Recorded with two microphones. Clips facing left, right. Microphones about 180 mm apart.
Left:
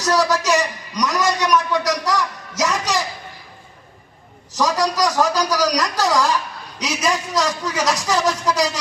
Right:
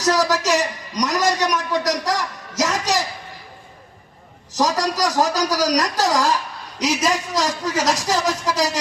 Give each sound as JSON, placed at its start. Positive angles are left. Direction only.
{"t": 0.0, "sound": "a man's voice", "side_deg": -45}
{"t": 4.5, "sound": "a man's voice", "side_deg": -45}